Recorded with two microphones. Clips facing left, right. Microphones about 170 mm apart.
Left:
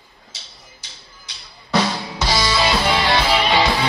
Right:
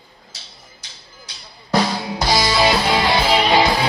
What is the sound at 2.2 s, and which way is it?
Music, 35° right (ahead or behind).